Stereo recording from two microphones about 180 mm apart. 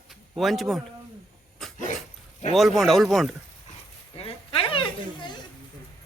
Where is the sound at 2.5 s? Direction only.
Centre (ahead or behind).